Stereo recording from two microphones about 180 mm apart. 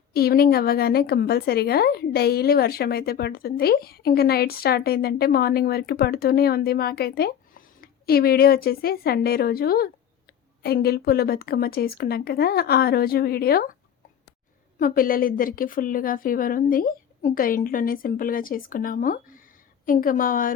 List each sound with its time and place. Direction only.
0.1 s a woman's voice: 60° left (ahead or behind)
14.8 s a woman's voice: 50° left (ahead or behind)